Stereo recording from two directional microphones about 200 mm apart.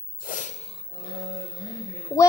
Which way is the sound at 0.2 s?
40° left (ahead or behind).